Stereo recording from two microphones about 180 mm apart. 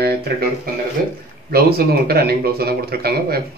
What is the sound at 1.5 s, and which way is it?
A man's voice, 60° right (ahead or behind).